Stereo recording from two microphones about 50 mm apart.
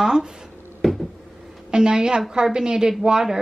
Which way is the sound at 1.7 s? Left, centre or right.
Centre.